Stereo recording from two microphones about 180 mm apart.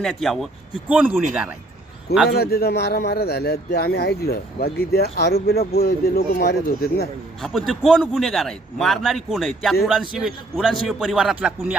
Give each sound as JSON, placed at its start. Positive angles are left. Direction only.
{"t": 0.0, "sound": "a man's voice", "side_deg": 0}
{"t": 2.4, "sound": "speech", "side_deg": 60}
{"t": 7.7, "sound": "a man's voice", "side_deg": 0}